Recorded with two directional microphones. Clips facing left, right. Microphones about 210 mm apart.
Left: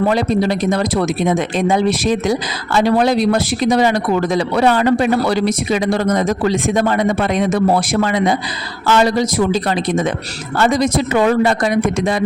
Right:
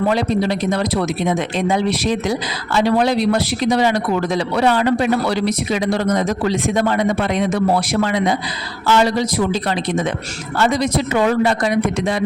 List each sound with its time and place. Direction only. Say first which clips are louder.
0.1 s speech: left 2 dB; 45° left (ahead or behind)